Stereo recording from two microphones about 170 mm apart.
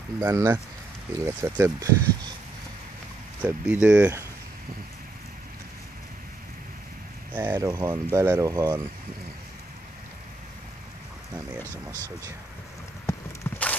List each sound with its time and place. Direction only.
0.2 s speech: 20° right (ahead or behind)
3.3 s speech: 10° right (ahead or behind)
7.3 s speech: 15° right (ahead or behind)
13.0 s a sound: 10° left (ahead or behind)